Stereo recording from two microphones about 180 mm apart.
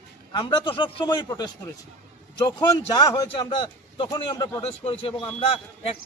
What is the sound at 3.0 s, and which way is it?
A man's voice, 25° left (ahead or behind).